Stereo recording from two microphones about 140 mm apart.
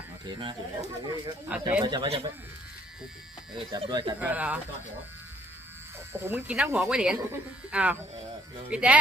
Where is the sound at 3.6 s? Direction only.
35° right (ahead or behind).